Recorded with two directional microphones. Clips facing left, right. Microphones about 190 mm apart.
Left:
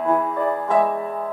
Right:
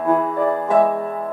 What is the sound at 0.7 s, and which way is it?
Music, 40° right (ahead or behind).